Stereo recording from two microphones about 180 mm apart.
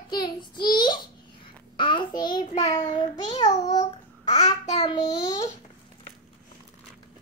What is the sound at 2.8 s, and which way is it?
Speech, 20° left (ahead or behind).